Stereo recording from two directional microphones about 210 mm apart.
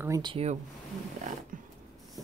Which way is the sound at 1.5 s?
40° right (ahead or behind).